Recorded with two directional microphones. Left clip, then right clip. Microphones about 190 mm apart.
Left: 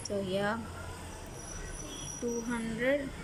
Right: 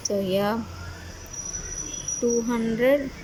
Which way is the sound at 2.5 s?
15° right (ahead or behind).